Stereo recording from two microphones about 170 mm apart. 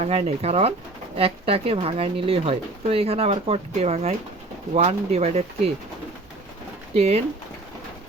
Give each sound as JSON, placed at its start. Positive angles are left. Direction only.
{"t": 0.0, "sound": "speech", "side_deg": -40}
{"t": 6.9, "sound": "speech", "side_deg": -40}